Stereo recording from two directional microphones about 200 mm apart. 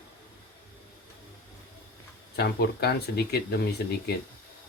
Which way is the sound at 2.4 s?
55° left (ahead or behind).